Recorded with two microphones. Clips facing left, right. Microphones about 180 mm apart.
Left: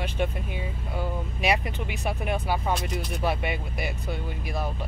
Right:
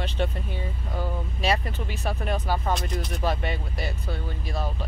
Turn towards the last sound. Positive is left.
turn(degrees=15)  # may be behind; listen again after turning